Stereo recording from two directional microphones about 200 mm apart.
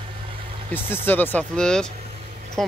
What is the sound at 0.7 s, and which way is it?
Speech, 10° left (ahead or behind).